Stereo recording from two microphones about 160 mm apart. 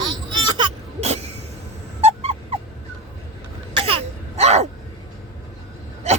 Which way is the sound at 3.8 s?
35° right (ahead or behind).